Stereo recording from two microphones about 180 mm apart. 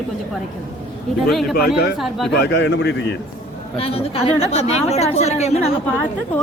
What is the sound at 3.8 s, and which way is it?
A woman's voice, 35° left (ahead or behind).